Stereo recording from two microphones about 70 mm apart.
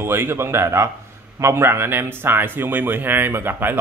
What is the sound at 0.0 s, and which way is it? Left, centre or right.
A man's voice, right.